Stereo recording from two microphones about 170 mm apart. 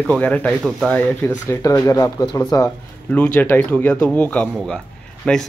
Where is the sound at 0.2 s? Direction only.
5° left (ahead or behind).